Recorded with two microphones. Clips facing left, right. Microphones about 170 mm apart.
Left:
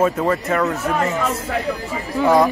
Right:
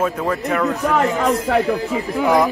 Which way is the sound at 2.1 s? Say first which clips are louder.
Left 2 dB; 15° right (ahead or behind).